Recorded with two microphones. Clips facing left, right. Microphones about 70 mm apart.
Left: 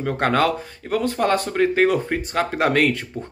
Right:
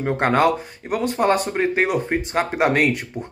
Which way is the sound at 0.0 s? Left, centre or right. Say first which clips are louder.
Right 2 dB; right.